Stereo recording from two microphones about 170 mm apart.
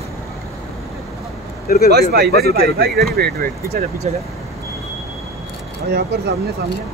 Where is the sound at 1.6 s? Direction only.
60° left (ahead or behind).